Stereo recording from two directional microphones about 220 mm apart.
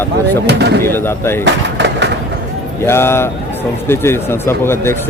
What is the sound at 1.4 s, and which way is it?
Vehicle, 50° right (ahead or behind).